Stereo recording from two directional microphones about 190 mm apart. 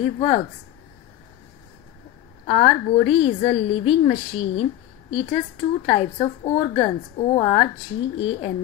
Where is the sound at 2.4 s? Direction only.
35° left (ahead or behind).